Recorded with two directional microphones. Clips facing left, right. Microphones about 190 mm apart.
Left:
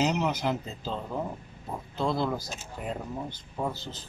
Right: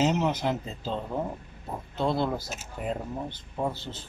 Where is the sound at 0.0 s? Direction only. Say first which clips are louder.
Right 2 dB; centre (ahead or behind).